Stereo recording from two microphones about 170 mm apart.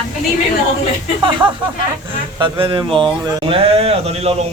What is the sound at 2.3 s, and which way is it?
Speech, 30° right (ahead or behind).